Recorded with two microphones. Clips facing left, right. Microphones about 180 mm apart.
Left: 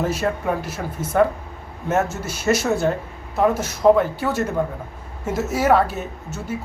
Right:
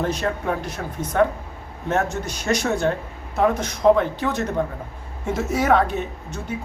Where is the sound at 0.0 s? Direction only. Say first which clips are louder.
Left 1 dB; 5° left (ahead or behind).